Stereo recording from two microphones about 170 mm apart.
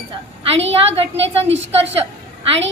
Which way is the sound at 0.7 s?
35° right (ahead or behind).